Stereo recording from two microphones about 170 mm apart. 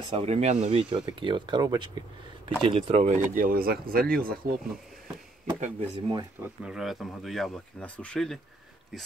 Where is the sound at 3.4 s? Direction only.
55° right (ahead or behind).